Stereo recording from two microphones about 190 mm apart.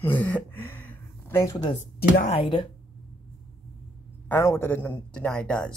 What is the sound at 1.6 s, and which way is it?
Speech, 35° left (ahead or behind).